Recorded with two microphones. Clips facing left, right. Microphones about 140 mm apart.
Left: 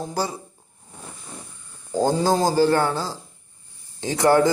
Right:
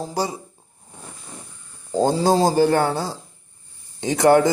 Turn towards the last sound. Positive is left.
turn(degrees=-20)  # may be behind; listen again after turning